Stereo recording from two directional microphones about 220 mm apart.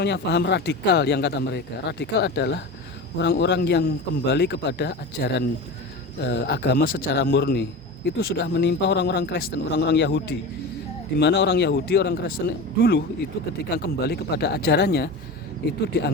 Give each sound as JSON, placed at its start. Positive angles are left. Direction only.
{"t": 0.0, "sound": "a man's voice", "side_deg": 50}